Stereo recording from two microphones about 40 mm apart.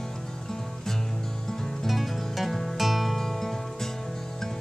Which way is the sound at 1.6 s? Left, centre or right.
Centre.